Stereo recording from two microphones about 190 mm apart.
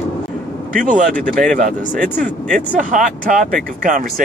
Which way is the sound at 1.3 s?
5° left (ahead or behind).